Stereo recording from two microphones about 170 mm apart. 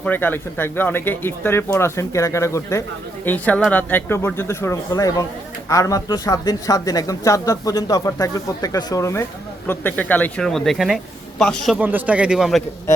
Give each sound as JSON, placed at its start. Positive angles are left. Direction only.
{"t": 0.0, "sound": "speech", "side_deg": 10}
{"t": 11.8, "sound": "a man's voice", "side_deg": -10}